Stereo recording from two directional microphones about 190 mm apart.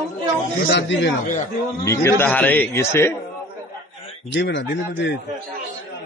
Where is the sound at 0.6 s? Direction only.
65° left (ahead or behind).